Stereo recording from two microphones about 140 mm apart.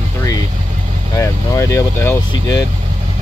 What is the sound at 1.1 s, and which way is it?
Speech, 20° left (ahead or behind).